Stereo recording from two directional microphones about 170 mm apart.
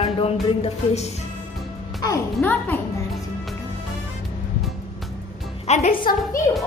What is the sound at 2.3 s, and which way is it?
Speech, 10° left (ahead or behind).